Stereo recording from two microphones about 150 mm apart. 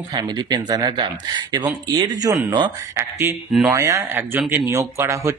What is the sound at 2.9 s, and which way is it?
Speech, 10° right (ahead or behind).